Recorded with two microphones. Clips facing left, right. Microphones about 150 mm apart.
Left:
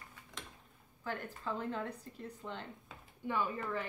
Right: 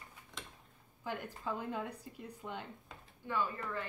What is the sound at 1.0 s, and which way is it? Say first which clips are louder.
Speech: even; 15° right (ahead or behind).